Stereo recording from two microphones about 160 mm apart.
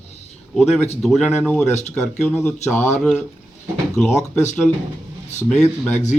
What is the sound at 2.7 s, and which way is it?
Speech, 15° left (ahead or behind).